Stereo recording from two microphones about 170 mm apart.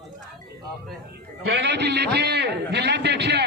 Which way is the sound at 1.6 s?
85° right.